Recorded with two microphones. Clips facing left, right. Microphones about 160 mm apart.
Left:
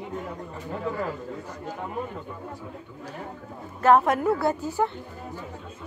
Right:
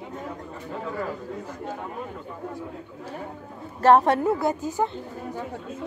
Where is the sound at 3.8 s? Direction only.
35° right (ahead or behind); by 4.9 s 20° right (ahead or behind).